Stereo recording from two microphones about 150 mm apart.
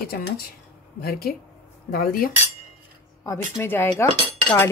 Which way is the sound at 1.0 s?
90° left.